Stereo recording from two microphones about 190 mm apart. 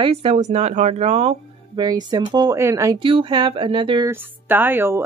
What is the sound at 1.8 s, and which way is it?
Speech, 20° right (ahead or behind).